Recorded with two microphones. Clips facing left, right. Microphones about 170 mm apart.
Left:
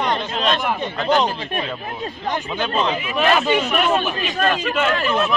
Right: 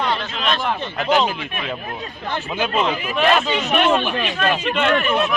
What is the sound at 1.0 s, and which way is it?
Speech, 5° right (ahead or behind).